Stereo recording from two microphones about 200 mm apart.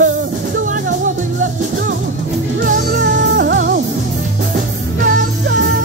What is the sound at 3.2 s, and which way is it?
Music, 55° right (ahead or behind).